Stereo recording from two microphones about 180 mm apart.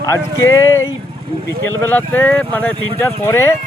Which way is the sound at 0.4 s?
15° left (ahead or behind).